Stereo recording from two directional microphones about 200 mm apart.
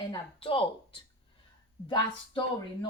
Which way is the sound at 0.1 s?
25° left (ahead or behind).